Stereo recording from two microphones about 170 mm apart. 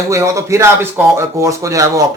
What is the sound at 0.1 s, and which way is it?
Speech, 15° right (ahead or behind).